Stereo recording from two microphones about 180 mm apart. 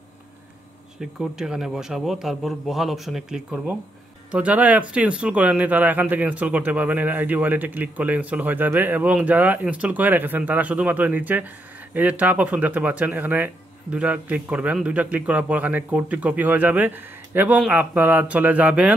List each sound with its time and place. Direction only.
1.2 s a man's voice: 5° right (ahead or behind)